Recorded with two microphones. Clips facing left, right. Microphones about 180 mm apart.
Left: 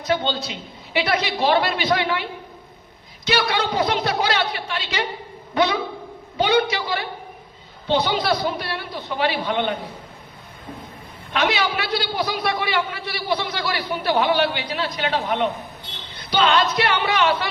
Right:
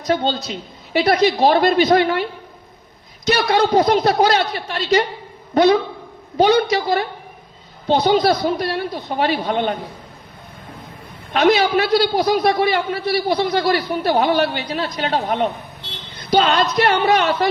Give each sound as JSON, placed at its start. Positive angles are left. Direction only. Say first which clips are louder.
{"t": 0.0, "sound": "a man's voice", "louder": "right 3 dB", "side_deg": -40}
{"t": 3.2, "sound": "a man's voice", "louder": "right 6 dB", "side_deg": -40}
{"t": 11.3, "sound": "a man's voice", "louder": "right 7 dB", "side_deg": -40}